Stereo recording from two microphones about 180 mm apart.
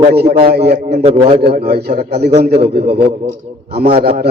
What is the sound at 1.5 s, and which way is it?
A man's voice, 60° right (ahead or behind).